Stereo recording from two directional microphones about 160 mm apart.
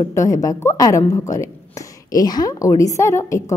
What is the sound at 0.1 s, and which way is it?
A woman's voice, 20° left (ahead or behind).